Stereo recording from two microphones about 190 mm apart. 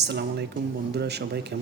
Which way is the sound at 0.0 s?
60° right (ahead or behind).